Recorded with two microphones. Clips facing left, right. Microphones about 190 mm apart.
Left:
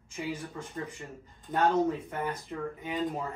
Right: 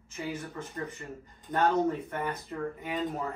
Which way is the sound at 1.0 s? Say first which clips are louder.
Right 2 dB; centre (ahead or behind).